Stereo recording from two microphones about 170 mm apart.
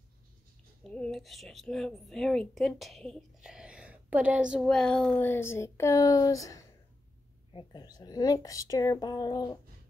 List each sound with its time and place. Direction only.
0.8 s a woman's voice: 5° left (ahead or behind); by 9.6 s 25° left (ahead or behind)